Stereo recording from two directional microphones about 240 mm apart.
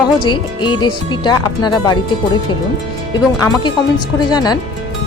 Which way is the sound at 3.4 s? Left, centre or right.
Centre.